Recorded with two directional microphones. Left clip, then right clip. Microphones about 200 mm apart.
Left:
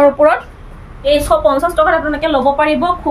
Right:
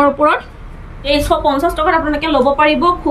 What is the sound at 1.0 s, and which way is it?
A woman's voice, 25° left (ahead or behind).